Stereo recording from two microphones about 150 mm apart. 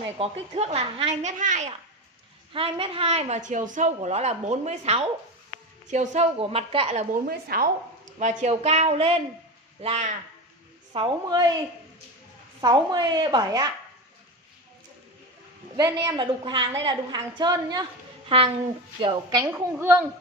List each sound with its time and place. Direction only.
0.2 s speech: 45° right (ahead or behind)
1.2 s speech: 55° right (ahead or behind)
2.5 s speech: 40° right (ahead or behind); by 6.2 s 55° right (ahead or behind)
6.3 s a woman's voice: 40° right (ahead or behind)
7.2 s speech: 85° right
8.2 s a woman's voice: 50° right (ahead or behind)
11.2 s a woman's voice: 25° right (ahead or behind)
12.5 s a woman's voice: 25° right (ahead or behind)
15.7 s a woman's voice: 25° right (ahead or behind)
18.9 s a woman's voice: 35° right (ahead or behind)
19.4 s a woman's voice: 15° right (ahead or behind)